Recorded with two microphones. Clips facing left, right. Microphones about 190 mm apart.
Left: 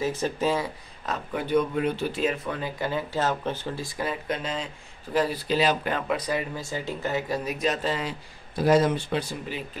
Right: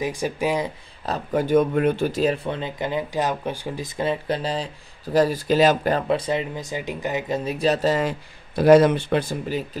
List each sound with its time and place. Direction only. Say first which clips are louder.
0.0 s speech: right 1 dB; 10° right (ahead or behind)
1.0 s speech: right 7 dB; 40° right (ahead or behind)